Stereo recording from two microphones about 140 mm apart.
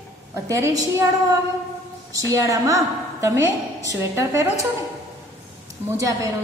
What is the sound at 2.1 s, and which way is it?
A woman's voice, 25° right (ahead or behind).